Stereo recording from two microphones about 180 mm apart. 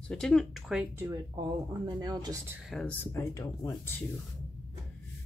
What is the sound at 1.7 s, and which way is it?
Speech, 25° right (ahead or behind).